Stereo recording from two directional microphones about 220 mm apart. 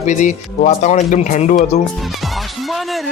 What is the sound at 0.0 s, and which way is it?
Speech, 35° left (ahead or behind).